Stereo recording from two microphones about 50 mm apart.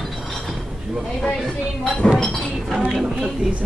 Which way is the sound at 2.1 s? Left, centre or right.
Centre.